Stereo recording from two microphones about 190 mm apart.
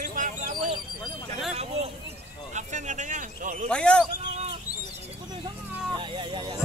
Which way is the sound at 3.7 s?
5° left (ahead or behind).